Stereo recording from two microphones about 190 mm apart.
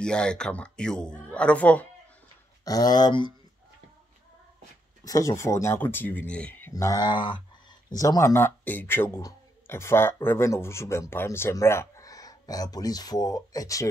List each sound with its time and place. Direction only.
0.0 s speech: 5° left (ahead or behind)
2.6 s speech: 20° left (ahead or behind)
5.0 s speech: 15° left (ahead or behind)